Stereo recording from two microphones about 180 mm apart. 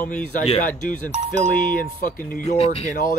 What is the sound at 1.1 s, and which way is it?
Speech, 40° right (ahead or behind).